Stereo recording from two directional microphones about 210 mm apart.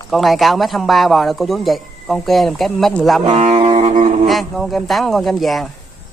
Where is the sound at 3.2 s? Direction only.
30° right (ahead or behind).